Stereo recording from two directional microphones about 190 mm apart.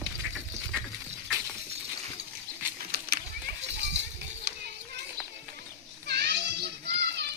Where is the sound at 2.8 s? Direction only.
50° right (ahead or behind).